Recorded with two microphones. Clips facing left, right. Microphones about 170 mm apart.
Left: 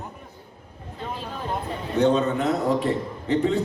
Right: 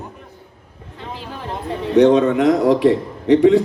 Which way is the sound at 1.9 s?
90° right.